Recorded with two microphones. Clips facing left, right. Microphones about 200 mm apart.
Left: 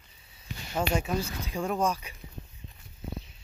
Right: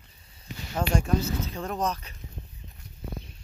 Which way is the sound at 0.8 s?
5° left (ahead or behind).